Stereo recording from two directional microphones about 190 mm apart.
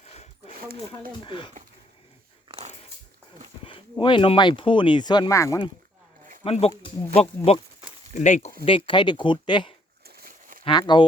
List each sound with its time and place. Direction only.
0.0 s a sound: 35° left (ahead or behind)
1.2 s speech: 25° left (ahead or behind)
2.5 s dog: 35° right (ahead or behind)
3.6 s speech: 30° left (ahead or behind)
6.4 s speech: 30° left (ahead or behind)
8.6 s speech: 25° left (ahead or behind)
10.0 s a sound: 55° right (ahead or behind)
10.7 s speech: 25° left (ahead or behind)